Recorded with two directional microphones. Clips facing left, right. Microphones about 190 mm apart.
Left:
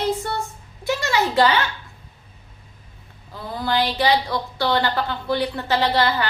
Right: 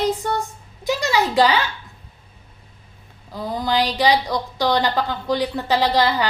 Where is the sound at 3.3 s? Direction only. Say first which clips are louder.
Right 2 dB; 15° right (ahead or behind).